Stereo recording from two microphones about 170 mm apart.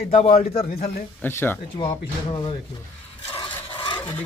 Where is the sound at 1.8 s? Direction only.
30° left (ahead or behind).